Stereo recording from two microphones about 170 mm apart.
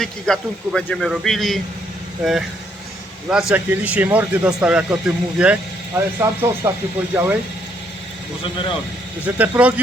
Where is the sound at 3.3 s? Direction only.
5° right (ahead or behind).